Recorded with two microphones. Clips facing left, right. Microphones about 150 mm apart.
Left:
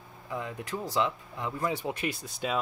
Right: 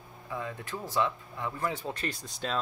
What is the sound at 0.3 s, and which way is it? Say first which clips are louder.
Speech: left 2 dB; 20° left (ahead or behind).